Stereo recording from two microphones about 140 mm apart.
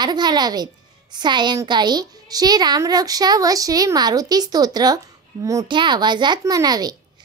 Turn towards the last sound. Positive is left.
turn(degrees=-30)  # may be behind; listen again after turning